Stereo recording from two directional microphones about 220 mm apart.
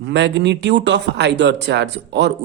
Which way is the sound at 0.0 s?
50° right (ahead or behind).